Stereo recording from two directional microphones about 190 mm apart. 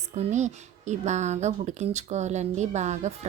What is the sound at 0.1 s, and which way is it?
A woman's voice, 40° right (ahead or behind).